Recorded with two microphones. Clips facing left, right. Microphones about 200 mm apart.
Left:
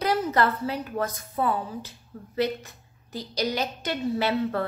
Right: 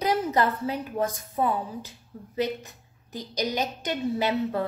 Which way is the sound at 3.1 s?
15° right (ahead or behind).